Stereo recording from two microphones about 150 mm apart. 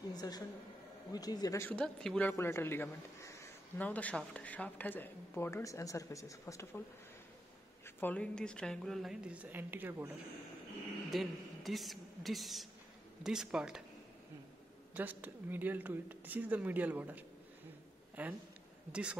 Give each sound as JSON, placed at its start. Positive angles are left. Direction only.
{"t": 0.1, "sound": "a woman's voice", "side_deg": 25}
{"t": 1.7, "sound": "a man's voice", "side_deg": 5}
{"t": 7.8, "sound": "a woman's voice", "side_deg": 10}
{"t": 11.1, "sound": "a woman's voice", "side_deg": 0}
{"t": 15.0, "sound": "speech", "side_deg": -10}